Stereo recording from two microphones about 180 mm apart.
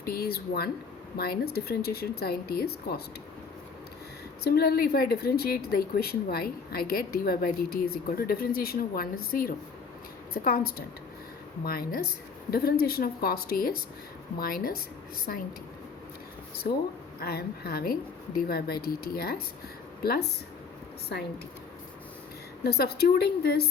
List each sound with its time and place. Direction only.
0.0 s speech: 60° left (ahead or behind)
4.4 s speech: 60° left (ahead or behind)
17.2 s speech: 60° left (ahead or behind)
22.6 s speech: 60° left (ahead or behind)